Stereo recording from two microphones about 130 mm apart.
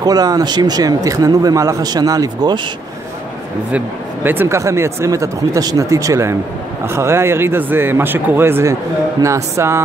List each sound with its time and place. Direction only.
0.0 s speech: 30° right (ahead or behind)
3.7 s speech: 15° right (ahead or behind)